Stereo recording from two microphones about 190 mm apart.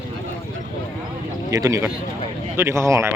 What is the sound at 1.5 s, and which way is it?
Speech, 20° right (ahead or behind).